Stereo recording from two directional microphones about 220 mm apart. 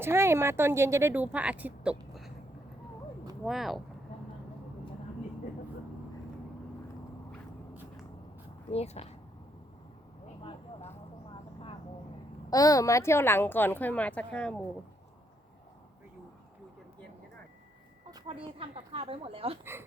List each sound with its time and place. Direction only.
0.0 s a woman's voice: 10° right (ahead or behind)
3.4 s speech: centre (ahead or behind)
8.7 s speech: 30° left (ahead or behind)
10.4 s vehicle: 30° left (ahead or behind)
12.5 s a woman's voice: 15° left (ahead or behind)
18.1 s speech: 20° right (ahead or behind)